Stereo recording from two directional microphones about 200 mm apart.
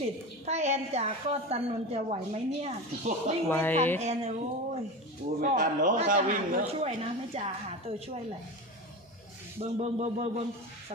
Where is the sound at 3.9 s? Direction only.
35° right (ahead or behind).